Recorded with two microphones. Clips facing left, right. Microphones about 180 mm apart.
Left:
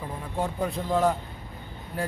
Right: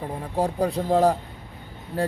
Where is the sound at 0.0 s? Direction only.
35° right (ahead or behind).